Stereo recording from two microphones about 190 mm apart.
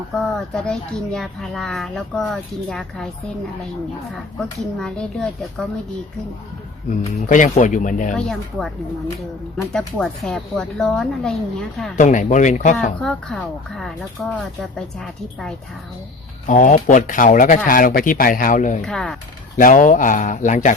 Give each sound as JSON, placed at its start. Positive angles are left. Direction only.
{"t": 0.2, "sound": "speech", "side_deg": 0}
{"t": 4.4, "sound": "speech", "side_deg": 5}
{"t": 7.0, "sound": "speech", "side_deg": 40}
{"t": 8.1, "sound": "speech", "side_deg": 5}
{"t": 9.7, "sound": "speech", "side_deg": 5}
{"t": 11.9, "sound": "speech", "side_deg": 40}
{"t": 12.7, "sound": "speech", "side_deg": 5}
{"t": 16.5, "sound": "speech", "side_deg": 40}
{"t": 18.9, "sound": "speech", "side_deg": 5}
{"t": 19.5, "sound": "speech", "side_deg": 45}